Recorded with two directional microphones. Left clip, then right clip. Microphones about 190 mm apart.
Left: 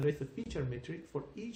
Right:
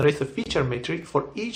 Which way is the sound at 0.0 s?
20° left (ahead or behind).